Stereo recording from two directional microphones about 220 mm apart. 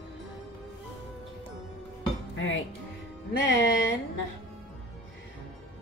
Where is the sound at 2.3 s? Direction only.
60° left (ahead or behind).